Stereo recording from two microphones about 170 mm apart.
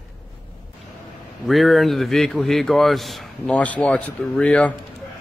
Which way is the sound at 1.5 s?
Centre (ahead or behind).